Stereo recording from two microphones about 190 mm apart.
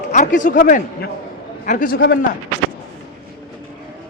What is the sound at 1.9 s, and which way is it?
Speech, 60° left (ahead or behind).